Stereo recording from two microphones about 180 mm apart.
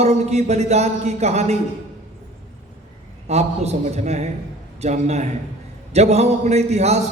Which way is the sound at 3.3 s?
35° right (ahead or behind).